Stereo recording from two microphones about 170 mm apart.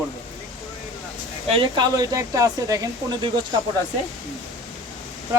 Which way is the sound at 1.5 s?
30° right (ahead or behind).